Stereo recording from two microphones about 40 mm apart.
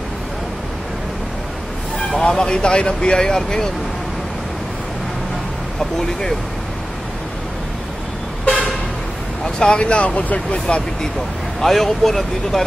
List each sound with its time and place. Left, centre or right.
2.3 s speech: left
5.8 s speech: centre
8.5 s vehicle: left
9.4 s speech: left
11.6 s speech: centre